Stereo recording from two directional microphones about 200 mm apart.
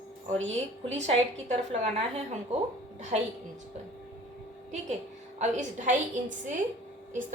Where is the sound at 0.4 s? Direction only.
70° right (ahead or behind).